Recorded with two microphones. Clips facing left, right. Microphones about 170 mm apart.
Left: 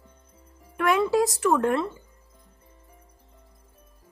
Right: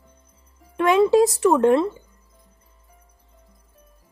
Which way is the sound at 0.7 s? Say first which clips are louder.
Right 6 dB; 25° right (ahead or behind).